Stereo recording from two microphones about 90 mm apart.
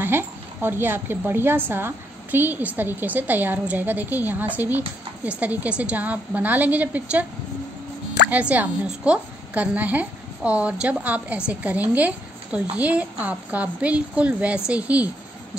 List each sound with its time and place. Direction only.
0.0 s a woman's voice: 25° right (ahead or behind)
8.3 s a woman's voice: 15° right (ahead or behind)